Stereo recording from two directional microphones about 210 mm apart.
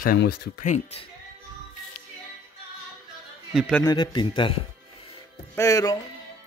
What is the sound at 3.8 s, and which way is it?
Speech, 20° left (ahead or behind).